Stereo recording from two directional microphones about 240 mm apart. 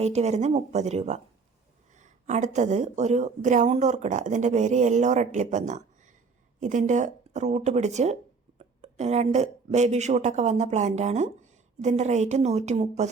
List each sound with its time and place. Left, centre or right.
0.0 s a woman's voice: right